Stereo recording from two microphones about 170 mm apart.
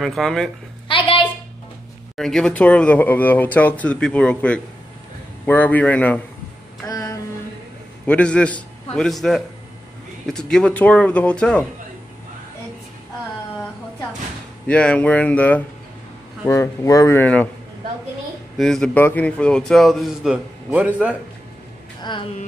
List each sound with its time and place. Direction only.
0.0 s a man's voice: centre (ahead or behind)
0.8 s a sound: 30° left (ahead or behind)
2.1 s speech: 5° left (ahead or behind)
6.9 s a sound: 20° left (ahead or behind)
8.1 s a man's voice: 5° left (ahead or behind)
14.7 s speech: 5° left (ahead or behind)
18.6 s a man's voice: 5° left (ahead or behind)